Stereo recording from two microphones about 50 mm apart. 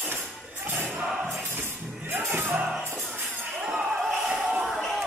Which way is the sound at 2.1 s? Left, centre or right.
Right.